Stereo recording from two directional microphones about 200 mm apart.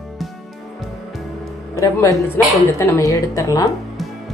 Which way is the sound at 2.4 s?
10° left (ahead or behind).